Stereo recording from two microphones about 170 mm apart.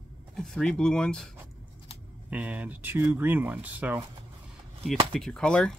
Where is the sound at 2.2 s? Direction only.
10° right (ahead or behind).